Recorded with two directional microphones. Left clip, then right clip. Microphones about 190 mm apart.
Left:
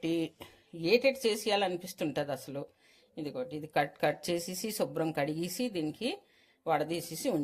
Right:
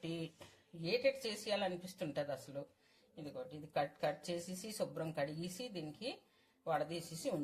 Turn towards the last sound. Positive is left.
turn(degrees=60)  # may be behind; listen again after turning